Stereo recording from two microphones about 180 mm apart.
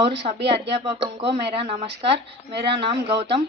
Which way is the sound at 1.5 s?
35° right (ahead or behind).